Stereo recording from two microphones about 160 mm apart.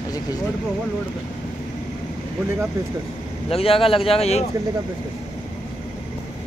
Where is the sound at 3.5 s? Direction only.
35° left (ahead or behind).